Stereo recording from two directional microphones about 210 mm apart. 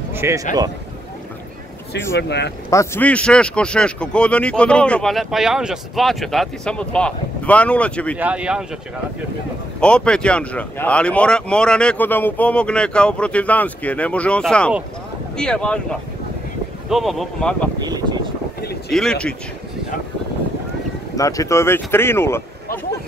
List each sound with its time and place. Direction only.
0.1 s speech: 15° right (ahead or behind)
2.1 s speech: 55° left (ahead or behind)
2.7 s speech: 15° left (ahead or behind)
8.2 s speech: 5° right (ahead or behind)
9.8 s speech: 5° left (ahead or behind)
18.9 s speech: centre (ahead or behind)
21.2 s speech: 15° left (ahead or behind)